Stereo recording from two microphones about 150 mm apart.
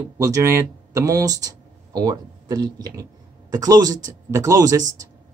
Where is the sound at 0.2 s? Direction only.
20° right (ahead or behind).